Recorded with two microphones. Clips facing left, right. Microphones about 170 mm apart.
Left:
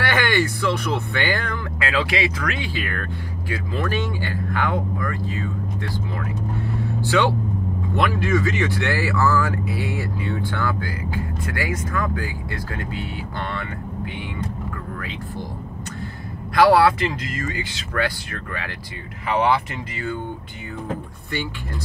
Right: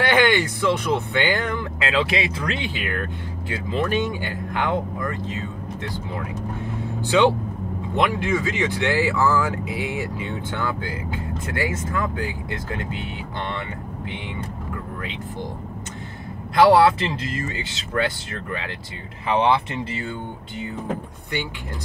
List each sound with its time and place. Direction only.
0.0 s speech: 20° right (ahead or behind)
16.5 s speech: 25° right (ahead or behind)